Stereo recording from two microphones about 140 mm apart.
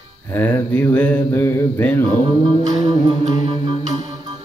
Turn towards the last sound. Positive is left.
turn(degrees=-30)  # may be behind; listen again after turning